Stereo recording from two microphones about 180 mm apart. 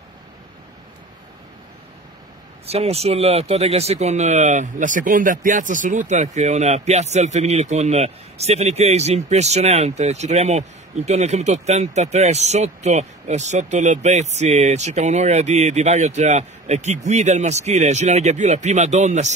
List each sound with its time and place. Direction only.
2.6 s speech: 35° right (ahead or behind)